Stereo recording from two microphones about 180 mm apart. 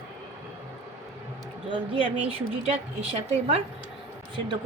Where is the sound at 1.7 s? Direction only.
30° right (ahead or behind).